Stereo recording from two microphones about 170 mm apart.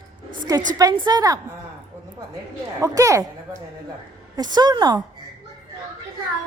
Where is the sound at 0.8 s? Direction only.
25° right (ahead or behind).